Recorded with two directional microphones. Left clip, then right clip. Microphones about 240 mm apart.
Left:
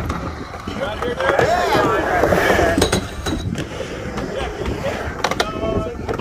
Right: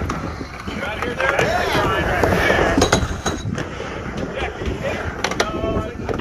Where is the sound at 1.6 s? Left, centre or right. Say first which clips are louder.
Left 2 dB; centre.